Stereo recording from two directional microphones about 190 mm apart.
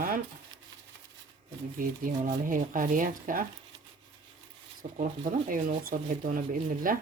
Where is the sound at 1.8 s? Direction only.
45° right (ahead or behind).